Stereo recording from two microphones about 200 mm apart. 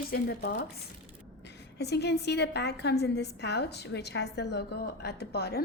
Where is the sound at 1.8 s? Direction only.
55° left (ahead or behind).